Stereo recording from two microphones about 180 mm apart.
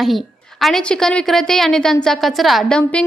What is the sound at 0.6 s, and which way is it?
A woman's voice, 5° left (ahead or behind).